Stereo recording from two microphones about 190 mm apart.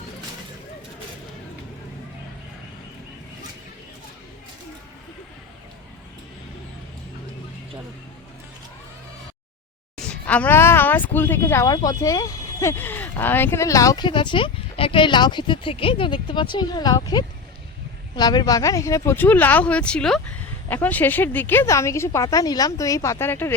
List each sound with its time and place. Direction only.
10.1 s speech: 5° left (ahead or behind)